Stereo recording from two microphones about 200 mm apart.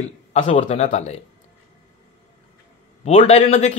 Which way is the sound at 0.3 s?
30° left (ahead or behind).